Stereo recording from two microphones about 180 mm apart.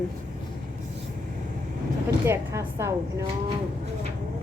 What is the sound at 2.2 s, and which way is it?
Speech, 15° right (ahead or behind).